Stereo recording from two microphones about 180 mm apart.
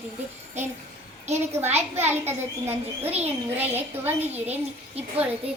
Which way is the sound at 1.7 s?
15° right (ahead or behind).